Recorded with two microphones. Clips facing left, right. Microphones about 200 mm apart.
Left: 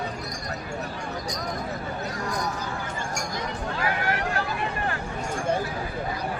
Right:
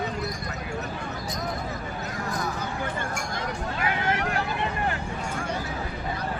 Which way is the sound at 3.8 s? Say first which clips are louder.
Even; 20° right (ahead or behind).